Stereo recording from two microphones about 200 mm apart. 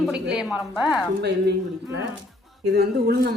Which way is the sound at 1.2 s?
55° right (ahead or behind).